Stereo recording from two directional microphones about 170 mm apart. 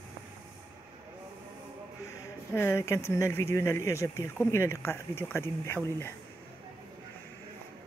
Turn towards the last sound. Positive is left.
turn(degrees=15)  # may be behind; listen again after turning